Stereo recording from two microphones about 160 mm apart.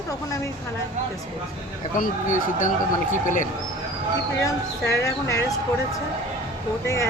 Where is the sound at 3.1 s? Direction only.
55° left (ahead or behind).